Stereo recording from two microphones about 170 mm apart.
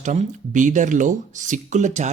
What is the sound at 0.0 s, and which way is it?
Speech, 45° right (ahead or behind).